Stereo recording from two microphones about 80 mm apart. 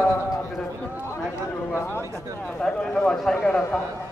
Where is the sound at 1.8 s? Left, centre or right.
Left.